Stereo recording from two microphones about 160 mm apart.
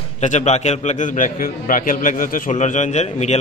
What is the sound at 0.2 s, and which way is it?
A man's voice, 50° left (ahead or behind).